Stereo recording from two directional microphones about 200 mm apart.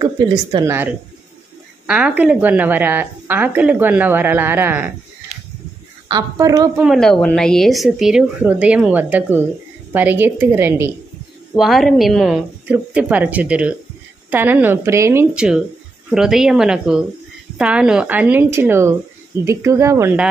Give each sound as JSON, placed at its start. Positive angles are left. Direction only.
{"t": 0.0, "sound": "speech", "side_deg": -20}
{"t": 1.9, "sound": "a woman's voice", "side_deg": -5}
{"t": 6.0, "sound": "a woman's voice", "side_deg": -15}
{"t": 6.8, "sound": "a woman's voice", "side_deg": 0}
{"t": 11.5, "sound": "a woman's voice", "side_deg": 0}